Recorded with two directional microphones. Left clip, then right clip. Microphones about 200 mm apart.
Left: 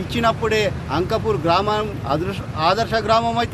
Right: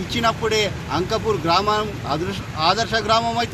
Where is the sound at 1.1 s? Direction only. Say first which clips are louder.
Left 1 dB; 5° left (ahead or behind).